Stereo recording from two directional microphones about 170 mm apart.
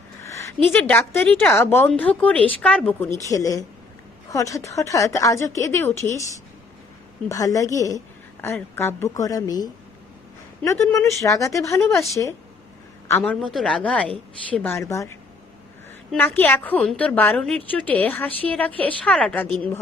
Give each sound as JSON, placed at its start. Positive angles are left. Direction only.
{"t": 0.2, "sound": "a woman's voice", "side_deg": 15}
{"t": 7.3, "sound": "a woman's voice", "side_deg": 20}
{"t": 13.4, "sound": "a woman's voice", "side_deg": 0}
{"t": 16.1, "sound": "a woman's voice", "side_deg": 10}